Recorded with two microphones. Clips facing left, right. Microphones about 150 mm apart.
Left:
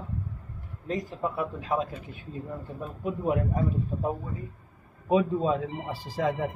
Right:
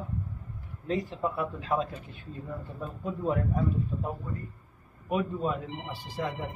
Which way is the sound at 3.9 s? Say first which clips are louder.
Left 4 dB; 50° left (ahead or behind).